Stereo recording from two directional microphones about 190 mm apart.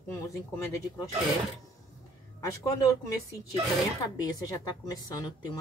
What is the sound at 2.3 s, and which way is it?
Speech, 20° left (ahead or behind).